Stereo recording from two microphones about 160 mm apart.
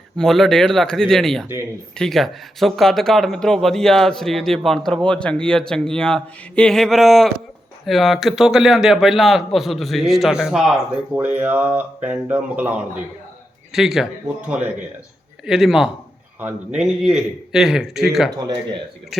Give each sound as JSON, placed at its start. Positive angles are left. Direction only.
{"t": 0.2, "sound": "speech", "side_deg": 5}
{"t": 18.3, "sound": "speech", "side_deg": -25}